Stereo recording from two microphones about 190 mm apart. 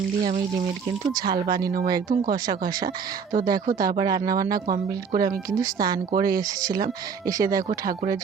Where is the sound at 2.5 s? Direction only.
20° right (ahead or behind).